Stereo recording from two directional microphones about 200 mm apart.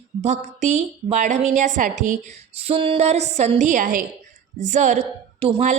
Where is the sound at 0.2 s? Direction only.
35° right (ahead or behind).